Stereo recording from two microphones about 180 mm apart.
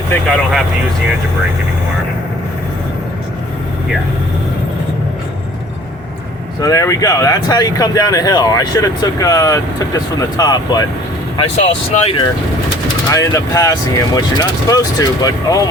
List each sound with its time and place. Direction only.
0.1 s speech: 5° left (ahead or behind)
6.6 s speech: 20° left (ahead or behind)
11.3 s speech: 35° left (ahead or behind)